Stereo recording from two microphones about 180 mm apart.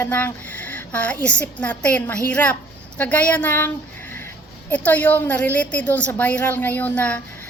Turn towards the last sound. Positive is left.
turn(degrees=10)  # may be behind; listen again after turning